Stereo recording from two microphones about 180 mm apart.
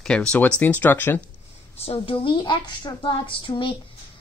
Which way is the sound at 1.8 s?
30° left (ahead or behind).